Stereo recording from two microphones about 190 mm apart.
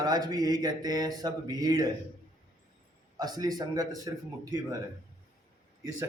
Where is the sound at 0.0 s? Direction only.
20° right (ahead or behind).